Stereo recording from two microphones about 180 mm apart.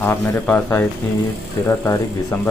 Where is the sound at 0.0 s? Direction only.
10° left (ahead or behind).